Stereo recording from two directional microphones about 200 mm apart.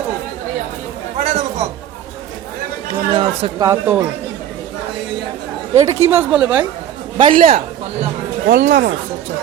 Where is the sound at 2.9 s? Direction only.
25° right (ahead or behind).